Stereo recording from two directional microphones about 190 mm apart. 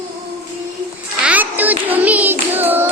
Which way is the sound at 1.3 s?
10° right (ahead or behind).